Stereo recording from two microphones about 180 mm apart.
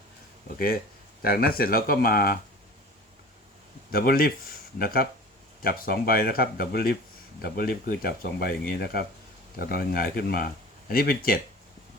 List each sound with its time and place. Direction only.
1.2 s speech: 55° left (ahead or behind)
3.9 s speech: 55° left (ahead or behind)